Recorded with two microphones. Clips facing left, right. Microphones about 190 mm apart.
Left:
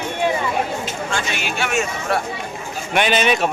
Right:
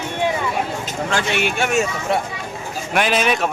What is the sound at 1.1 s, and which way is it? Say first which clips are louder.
Speech: right 6 dB; 60° right (ahead or behind).